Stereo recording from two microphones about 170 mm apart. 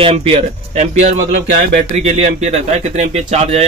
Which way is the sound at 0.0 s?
35° right (ahead or behind).